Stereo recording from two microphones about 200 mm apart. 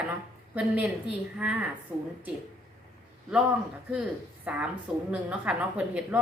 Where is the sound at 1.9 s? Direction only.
5° right (ahead or behind).